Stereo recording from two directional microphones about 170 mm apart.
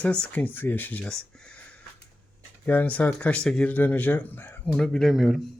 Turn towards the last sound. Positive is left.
turn(degrees=0)  # may be behind; listen again after turning